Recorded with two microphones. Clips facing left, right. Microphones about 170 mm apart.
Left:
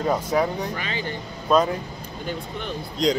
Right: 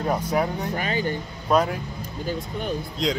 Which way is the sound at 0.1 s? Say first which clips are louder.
Left 1 dB; 10° right (ahead or behind).